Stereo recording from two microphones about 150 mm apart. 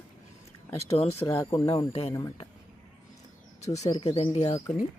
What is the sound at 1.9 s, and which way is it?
Speech, 45° left (ahead or behind).